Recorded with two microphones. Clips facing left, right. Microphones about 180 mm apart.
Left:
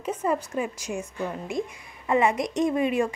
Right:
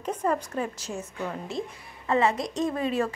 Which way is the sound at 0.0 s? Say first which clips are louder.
Left 1 dB; 10° left (ahead or behind).